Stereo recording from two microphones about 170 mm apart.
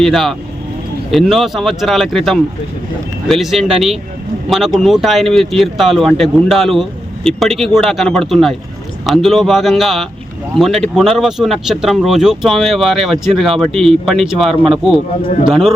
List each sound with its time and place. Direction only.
0.0 s speech: centre (ahead or behind)